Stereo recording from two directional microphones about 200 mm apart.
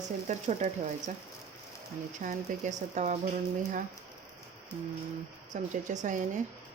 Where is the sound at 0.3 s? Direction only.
35° right (ahead or behind).